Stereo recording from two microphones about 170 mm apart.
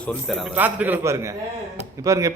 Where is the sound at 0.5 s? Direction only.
10° right (ahead or behind).